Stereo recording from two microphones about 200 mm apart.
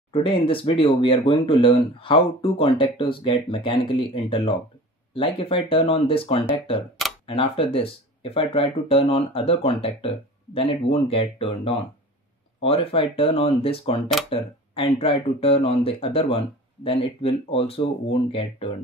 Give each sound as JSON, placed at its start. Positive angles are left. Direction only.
{"t": 0.1, "sound": "speech", "side_deg": 25}